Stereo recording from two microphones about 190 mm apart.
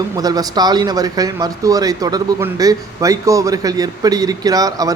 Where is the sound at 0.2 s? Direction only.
20° right (ahead or behind).